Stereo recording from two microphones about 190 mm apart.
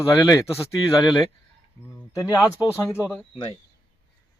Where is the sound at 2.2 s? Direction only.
15° left (ahead or behind).